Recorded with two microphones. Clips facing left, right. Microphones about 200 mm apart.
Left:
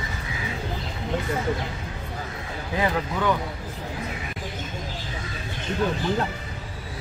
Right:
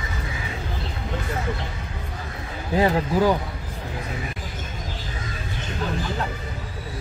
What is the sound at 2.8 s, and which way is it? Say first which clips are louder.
Speech: right 5 dB; 30° right (ahead or behind).